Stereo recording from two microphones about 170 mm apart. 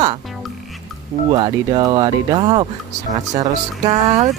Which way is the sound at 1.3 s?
30° right (ahead or behind).